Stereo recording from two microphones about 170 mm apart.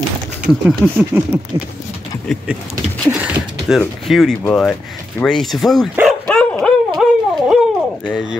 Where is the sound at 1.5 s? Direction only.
20° right (ahead or behind).